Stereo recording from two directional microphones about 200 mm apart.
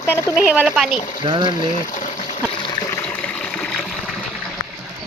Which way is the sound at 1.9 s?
40° left (ahead or behind).